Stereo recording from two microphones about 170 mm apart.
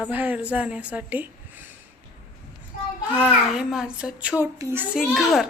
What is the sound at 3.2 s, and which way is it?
A child's voice, 5° right (ahead or behind).